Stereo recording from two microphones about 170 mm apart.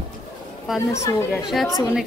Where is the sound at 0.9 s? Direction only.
15° left (ahead or behind).